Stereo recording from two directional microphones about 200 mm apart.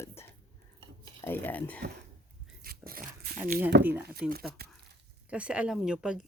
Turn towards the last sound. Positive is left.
turn(degrees=-5)  # may be behind; listen again after turning